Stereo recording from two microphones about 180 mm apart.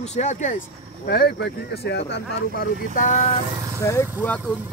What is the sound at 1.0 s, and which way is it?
Speech, 60° left (ahead or behind).